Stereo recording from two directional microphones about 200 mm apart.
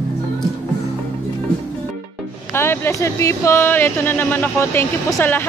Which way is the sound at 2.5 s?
10° left (ahead or behind).